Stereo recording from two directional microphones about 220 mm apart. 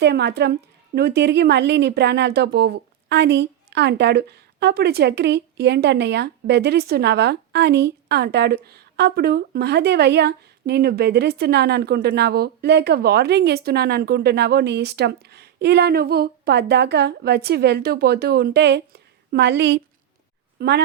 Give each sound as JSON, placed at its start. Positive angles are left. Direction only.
{"t": 0.0, "sound": "speech", "side_deg": -50}